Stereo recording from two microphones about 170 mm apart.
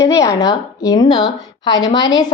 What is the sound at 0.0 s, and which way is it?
Speech, 20° left (ahead or behind).